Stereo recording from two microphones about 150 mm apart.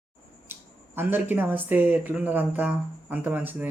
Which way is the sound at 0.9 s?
15° right (ahead or behind).